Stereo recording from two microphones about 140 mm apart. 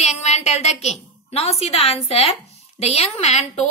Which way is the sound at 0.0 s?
50° left (ahead or behind).